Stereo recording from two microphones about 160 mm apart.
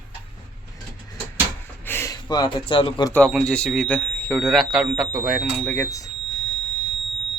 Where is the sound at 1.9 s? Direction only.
15° left (ahead or behind).